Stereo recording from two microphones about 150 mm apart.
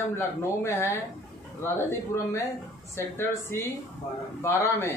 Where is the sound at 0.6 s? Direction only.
15° left (ahead or behind).